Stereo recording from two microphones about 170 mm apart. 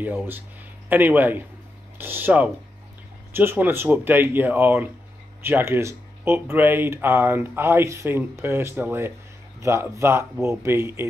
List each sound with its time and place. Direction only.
0.0 s speech: 10° right (ahead or behind)